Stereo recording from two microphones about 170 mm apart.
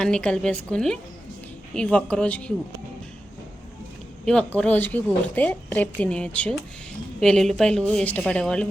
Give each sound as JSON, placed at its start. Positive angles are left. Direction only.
{"t": 0.0, "sound": "a woman's voice", "side_deg": 5}
{"t": 4.5, "sound": "a woman's voice", "side_deg": 10}